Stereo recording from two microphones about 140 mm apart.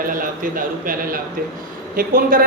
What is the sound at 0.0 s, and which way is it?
A woman's voice, 80° right.